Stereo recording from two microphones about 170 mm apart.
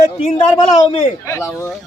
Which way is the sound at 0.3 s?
30° left (ahead or behind).